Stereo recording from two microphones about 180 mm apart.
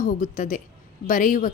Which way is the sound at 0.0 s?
45° left (ahead or behind).